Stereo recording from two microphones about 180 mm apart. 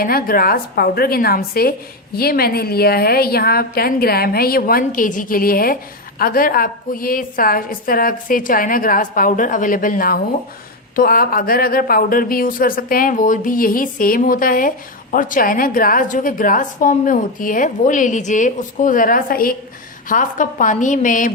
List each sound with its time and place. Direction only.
0.0 s a woman's voice: 55° left (ahead or behind)